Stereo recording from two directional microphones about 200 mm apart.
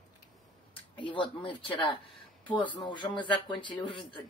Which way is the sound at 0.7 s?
25° left (ahead or behind).